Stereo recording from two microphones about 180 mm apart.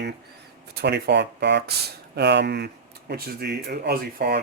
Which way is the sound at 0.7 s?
65° right (ahead or behind).